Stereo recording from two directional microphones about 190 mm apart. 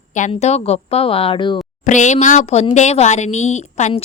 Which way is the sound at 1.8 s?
40° left (ahead or behind).